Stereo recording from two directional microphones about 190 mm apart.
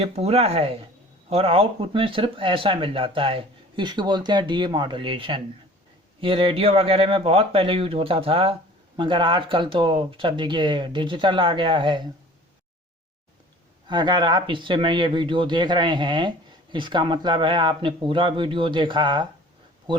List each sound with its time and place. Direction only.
0.0 s speech: 30° right (ahead or behind)
13.8 s speech: 25° right (ahead or behind)